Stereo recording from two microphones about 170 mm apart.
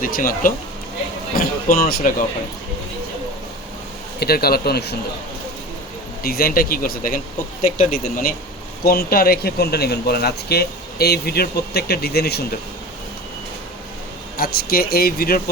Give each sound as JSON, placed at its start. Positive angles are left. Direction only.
{"t": 0.0, "sound": "speech", "side_deg": 55}
{"t": 4.2, "sound": "speech", "side_deg": 65}
{"t": 6.2, "sound": "speech", "side_deg": 60}
{"t": 14.3, "sound": "speech", "side_deg": 60}